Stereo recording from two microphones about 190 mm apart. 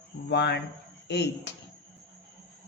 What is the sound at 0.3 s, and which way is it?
Speech, 65° left (ahead or behind).